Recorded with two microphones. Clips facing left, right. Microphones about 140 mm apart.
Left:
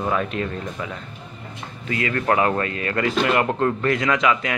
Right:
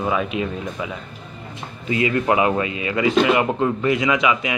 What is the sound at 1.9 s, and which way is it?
A man's voice, 20° right (ahead or behind).